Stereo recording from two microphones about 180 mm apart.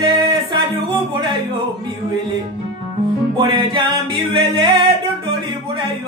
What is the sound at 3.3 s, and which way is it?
Singing, 30° right (ahead or behind).